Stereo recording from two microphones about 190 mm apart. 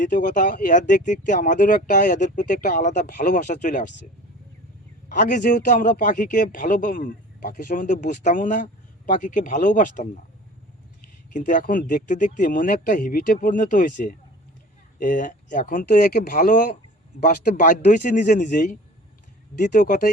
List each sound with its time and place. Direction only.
0.0 s a man's voice: 45° left (ahead or behind)
5.0 s a man's voice: 40° left (ahead or behind)
11.3 s a man's voice: 45° left (ahead or behind)